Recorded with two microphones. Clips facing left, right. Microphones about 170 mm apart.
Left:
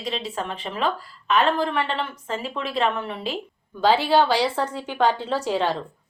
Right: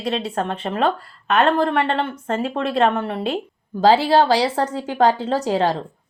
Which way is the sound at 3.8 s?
40° right (ahead or behind).